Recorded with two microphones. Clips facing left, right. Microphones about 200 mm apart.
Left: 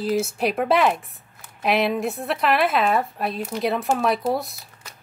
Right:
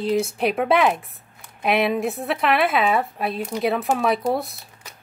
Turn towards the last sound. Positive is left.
turn(degrees=0)  # may be behind; listen again after turning